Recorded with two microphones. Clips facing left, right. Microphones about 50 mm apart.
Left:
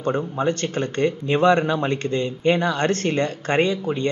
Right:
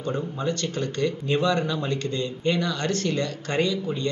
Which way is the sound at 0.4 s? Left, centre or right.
Left.